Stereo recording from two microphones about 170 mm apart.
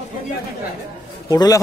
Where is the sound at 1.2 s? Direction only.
20° left (ahead or behind).